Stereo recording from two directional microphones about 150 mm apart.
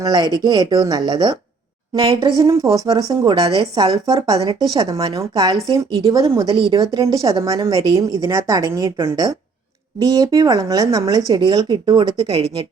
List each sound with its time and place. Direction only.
0.0 s a woman's voice: 25° right (ahead or behind)